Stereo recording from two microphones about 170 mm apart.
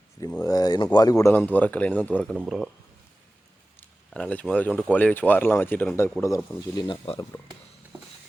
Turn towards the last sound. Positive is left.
turn(degrees=30)  # may be behind; listen again after turning